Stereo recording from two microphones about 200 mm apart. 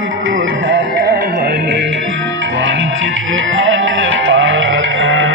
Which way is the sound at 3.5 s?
75° right (ahead or behind).